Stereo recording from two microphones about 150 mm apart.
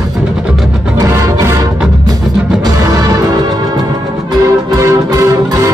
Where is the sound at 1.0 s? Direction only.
20° right (ahead or behind).